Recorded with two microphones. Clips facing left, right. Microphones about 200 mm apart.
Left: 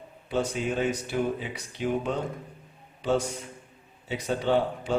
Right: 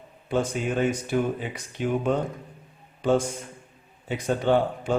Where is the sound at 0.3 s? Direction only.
50° right (ahead or behind).